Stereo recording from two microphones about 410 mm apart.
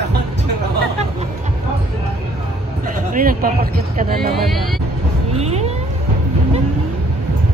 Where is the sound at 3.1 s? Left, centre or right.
Centre.